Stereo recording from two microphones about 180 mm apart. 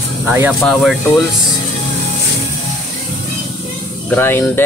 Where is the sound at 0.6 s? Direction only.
Centre (ahead or behind).